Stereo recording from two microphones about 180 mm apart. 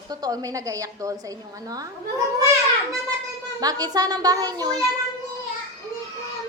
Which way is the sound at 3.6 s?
20° right (ahead or behind).